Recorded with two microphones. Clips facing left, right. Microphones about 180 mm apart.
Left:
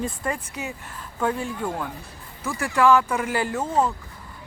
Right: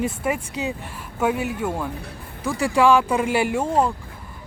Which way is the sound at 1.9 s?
65° right (ahead or behind).